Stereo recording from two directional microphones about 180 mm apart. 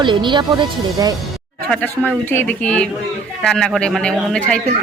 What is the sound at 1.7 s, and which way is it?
Speech, 10° left (ahead or behind).